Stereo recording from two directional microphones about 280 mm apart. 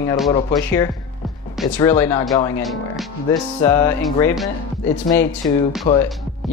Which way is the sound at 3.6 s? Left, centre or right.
Centre.